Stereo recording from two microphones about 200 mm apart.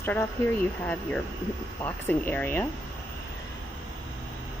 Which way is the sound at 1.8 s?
10° left (ahead or behind).